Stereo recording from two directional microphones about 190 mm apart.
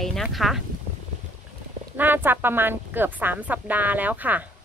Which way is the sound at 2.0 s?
10° right (ahead or behind).